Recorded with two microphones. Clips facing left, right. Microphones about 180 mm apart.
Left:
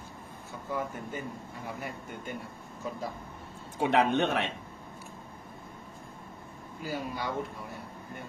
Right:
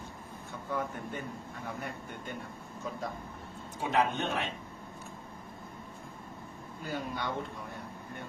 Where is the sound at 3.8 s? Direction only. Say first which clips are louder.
Left 4 dB; 70° left (ahead or behind).